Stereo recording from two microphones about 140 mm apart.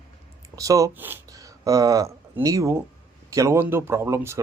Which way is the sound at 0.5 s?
25° right (ahead or behind).